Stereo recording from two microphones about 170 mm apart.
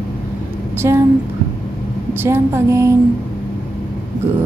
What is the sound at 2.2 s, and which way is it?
Speech, 15° right (ahead or behind).